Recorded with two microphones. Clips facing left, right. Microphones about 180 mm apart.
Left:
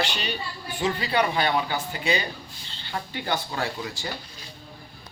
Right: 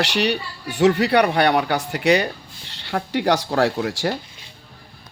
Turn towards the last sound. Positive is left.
turn(degrees=-80)